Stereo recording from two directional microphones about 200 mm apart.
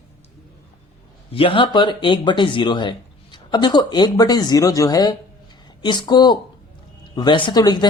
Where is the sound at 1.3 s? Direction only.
25° left (ahead or behind).